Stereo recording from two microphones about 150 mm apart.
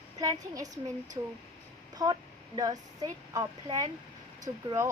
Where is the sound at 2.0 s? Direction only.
25° right (ahead or behind).